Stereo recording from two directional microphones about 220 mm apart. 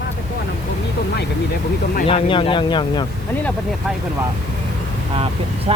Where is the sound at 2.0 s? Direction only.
25° left (ahead or behind).